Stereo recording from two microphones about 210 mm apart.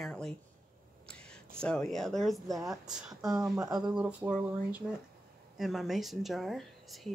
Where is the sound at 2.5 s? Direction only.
15° right (ahead or behind).